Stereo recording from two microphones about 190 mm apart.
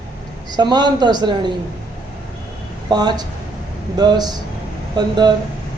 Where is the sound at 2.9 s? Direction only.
20° right (ahead or behind).